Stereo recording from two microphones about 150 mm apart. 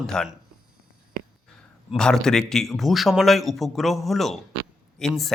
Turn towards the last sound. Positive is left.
turn(degrees=0)  # may be behind; listen again after turning